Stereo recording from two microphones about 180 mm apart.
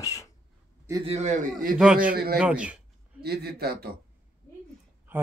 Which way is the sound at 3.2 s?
60° right (ahead or behind).